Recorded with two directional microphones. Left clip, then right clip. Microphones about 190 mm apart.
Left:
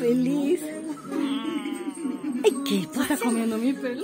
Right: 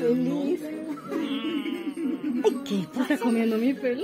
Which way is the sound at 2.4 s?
35° left (ahead or behind).